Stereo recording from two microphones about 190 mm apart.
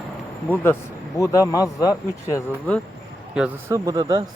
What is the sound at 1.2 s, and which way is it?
Speech, 15° left (ahead or behind).